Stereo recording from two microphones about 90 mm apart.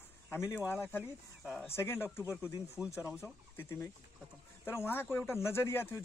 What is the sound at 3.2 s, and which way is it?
A man's voice, 30° left (ahead or behind).